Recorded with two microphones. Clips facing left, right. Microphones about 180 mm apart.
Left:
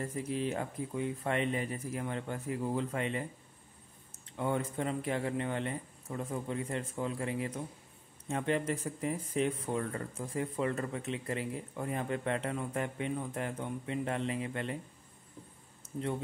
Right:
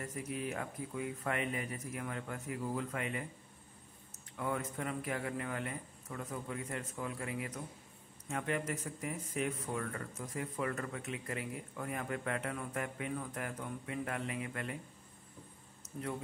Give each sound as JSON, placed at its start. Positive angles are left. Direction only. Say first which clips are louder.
{"t": 0.0, "sound": "speech", "louder": "left 5 dB", "side_deg": 30}
{"t": 15.9, "sound": "speech", "louder": "left 5 dB", "side_deg": 20}